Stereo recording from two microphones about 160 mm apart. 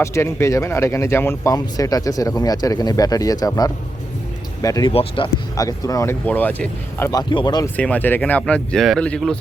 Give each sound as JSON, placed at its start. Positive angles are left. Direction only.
{"t": 0.0, "sound": "speech", "side_deg": 15}
{"t": 4.9, "sound": "speech", "side_deg": 35}
{"t": 5.5, "sound": "speech", "side_deg": 20}
{"t": 7.1, "sound": "speech", "side_deg": 25}
{"t": 7.8, "sound": "speech", "side_deg": 10}